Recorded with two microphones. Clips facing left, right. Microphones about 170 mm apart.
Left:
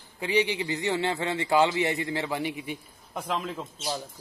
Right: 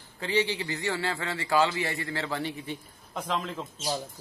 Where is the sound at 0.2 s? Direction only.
15° left (ahead or behind).